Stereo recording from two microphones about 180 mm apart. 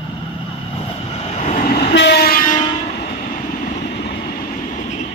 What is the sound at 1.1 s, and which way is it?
Train, 40° left (ahead or behind).